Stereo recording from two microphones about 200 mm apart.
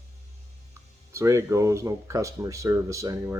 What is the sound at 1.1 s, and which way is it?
Speech, 15° right (ahead or behind).